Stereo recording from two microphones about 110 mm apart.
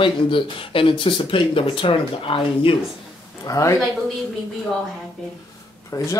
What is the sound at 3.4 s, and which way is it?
Speech, 30° left (ahead or behind).